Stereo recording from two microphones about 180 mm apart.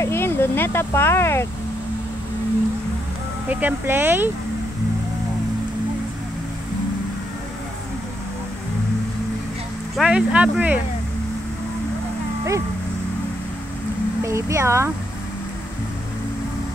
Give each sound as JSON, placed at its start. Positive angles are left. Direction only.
{"t": 0.0, "sound": "speech", "side_deg": 15}
{"t": 3.4, "sound": "speech", "side_deg": -10}
{"t": 9.9, "sound": "speech", "side_deg": -5}
{"t": 14.2, "sound": "speech", "side_deg": -15}